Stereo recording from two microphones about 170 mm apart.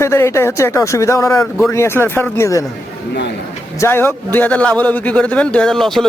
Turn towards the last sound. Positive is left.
turn(degrees=0)  # may be behind; listen again after turning